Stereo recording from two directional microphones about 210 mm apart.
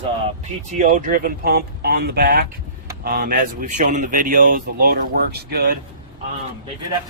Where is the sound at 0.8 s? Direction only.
40° right (ahead or behind).